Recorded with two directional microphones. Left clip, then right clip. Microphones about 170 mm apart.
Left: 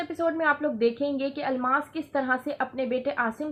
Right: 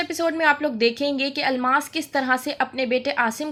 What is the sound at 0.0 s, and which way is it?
A woman's voice, 25° right (ahead or behind).